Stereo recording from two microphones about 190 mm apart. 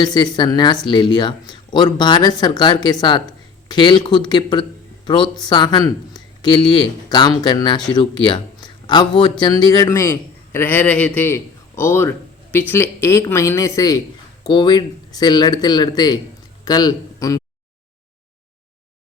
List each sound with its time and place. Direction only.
0.0 s a man's voice: 20° left (ahead or behind)